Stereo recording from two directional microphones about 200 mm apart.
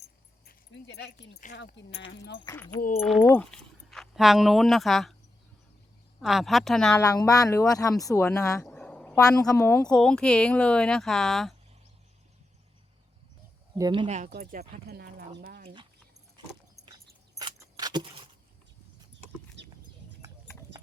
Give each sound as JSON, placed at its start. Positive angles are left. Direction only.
{"t": 0.4, "sound": "speech", "side_deg": 55}
{"t": 3.0, "sound": "speech", "side_deg": 0}
{"t": 6.2, "sound": "speech", "side_deg": 0}
{"t": 6.9, "sound": "speech", "side_deg": 15}
{"t": 8.6, "sound": "a sound", "side_deg": 5}
{"t": 9.4, "sound": "speech", "side_deg": 15}
{"t": 13.7, "sound": "speech", "side_deg": -20}
{"t": 14.3, "sound": "speech", "side_deg": -50}
{"t": 16.7, "sound": "vehicle", "side_deg": -20}
{"t": 17.3, "sound": "keys jangling", "side_deg": -20}
{"t": 19.6, "sound": "a sound", "side_deg": -60}